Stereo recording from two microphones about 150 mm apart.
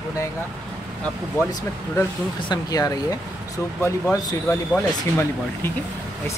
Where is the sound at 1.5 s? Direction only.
25° left (ahead or behind).